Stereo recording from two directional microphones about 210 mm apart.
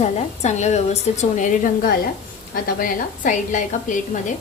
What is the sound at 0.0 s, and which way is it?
A woman's voice, 35° left (ahead or behind).